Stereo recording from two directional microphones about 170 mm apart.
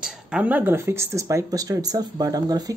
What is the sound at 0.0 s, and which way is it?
Speech, 5° right (ahead or behind).